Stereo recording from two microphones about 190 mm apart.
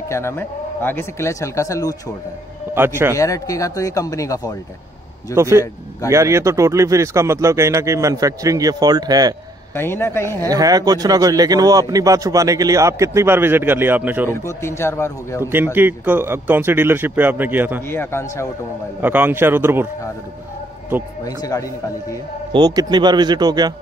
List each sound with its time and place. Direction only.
0.1 s speech: 15° left (ahead or behind)
2.7 s speech: 10° right (ahead or behind)
3.2 s speech: 15° left (ahead or behind)
5.3 s speech: 15° right (ahead or behind)
9.8 s speech: 10° left (ahead or behind)
10.4 s speech: 20° right (ahead or behind)
14.3 s speech: 15° left (ahead or behind)
15.5 s speech: 10° right (ahead or behind)
17.8 s speech: 15° left (ahead or behind)
18.9 s speech: 10° right (ahead or behind)
21.2 s speech: 20° left (ahead or behind)
22.5 s speech: 20° right (ahead or behind)